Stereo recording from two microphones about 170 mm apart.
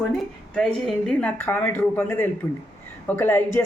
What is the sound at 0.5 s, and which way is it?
A woman's voice, 5° left (ahead or behind).